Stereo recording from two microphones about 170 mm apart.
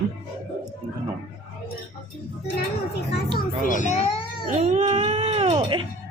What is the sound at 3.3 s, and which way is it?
Children playing, 50° left (ahead or behind).